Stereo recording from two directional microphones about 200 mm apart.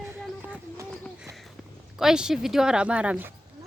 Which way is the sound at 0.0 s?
10° right (ahead or behind).